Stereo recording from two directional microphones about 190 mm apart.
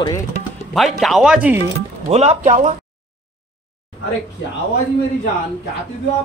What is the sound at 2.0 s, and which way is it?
Speech, 35° right (ahead or behind).